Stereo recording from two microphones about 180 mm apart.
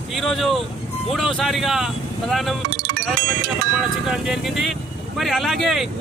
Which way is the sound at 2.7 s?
60° right (ahead or behind).